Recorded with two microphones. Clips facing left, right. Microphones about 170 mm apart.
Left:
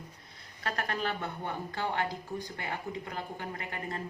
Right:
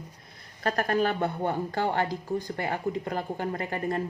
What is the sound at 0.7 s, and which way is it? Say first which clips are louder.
A woman's voice: right 8 dB; 45° right (ahead or behind).